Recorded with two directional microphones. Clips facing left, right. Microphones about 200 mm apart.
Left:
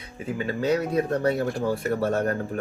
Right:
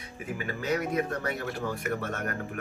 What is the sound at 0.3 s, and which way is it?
Speech, 30° left (ahead or behind).